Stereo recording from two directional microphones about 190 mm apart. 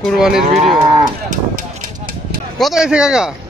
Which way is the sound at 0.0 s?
Centre (ahead or behind).